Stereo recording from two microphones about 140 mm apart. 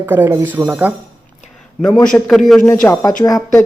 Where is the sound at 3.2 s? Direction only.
25° left (ahead or behind).